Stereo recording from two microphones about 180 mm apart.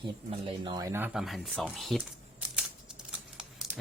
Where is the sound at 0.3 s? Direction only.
30° right (ahead or behind).